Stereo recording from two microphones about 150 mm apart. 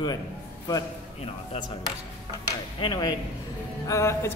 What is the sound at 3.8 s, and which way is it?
Speech, 20° left (ahead or behind).